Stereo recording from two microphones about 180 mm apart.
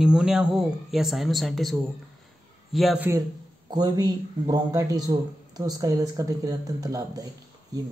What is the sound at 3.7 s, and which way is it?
A man's voice, 20° right (ahead or behind).